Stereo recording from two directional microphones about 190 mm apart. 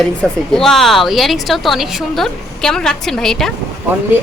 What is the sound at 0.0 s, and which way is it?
A woman's voice, centre (ahead or behind).